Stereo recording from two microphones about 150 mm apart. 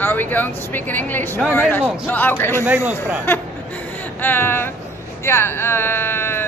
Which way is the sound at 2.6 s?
10° right (ahead or behind).